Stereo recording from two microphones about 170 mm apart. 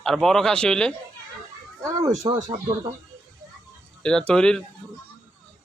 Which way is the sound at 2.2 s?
30° right (ahead or behind).